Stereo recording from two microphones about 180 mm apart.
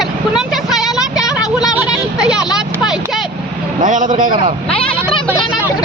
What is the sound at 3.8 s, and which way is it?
Speech, 45° right (ahead or behind).